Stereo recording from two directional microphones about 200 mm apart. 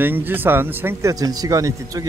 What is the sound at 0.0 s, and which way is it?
Speech, 10° right (ahead or behind).